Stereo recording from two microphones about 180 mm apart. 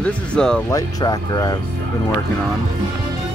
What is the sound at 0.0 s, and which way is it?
Speech, 5° left (ahead or behind).